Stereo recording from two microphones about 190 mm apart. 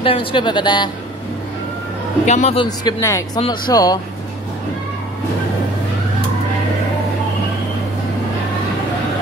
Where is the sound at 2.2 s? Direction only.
35° left (ahead or behind).